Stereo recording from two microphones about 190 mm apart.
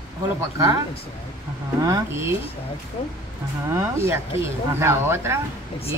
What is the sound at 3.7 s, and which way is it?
Speech, 15° right (ahead or behind).